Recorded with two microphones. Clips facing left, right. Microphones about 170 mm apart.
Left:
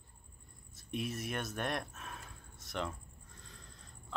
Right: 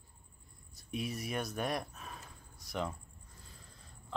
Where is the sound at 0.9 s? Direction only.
Centre (ahead or behind).